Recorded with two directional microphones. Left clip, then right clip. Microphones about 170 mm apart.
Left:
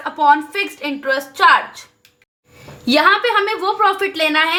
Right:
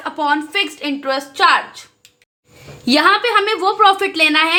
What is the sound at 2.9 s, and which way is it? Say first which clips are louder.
A woman's voice: even; 25° right (ahead or behind).